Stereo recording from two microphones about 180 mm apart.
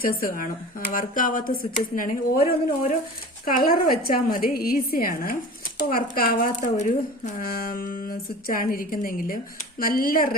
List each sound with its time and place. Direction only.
0.0 s speech: 55° left (ahead or behind)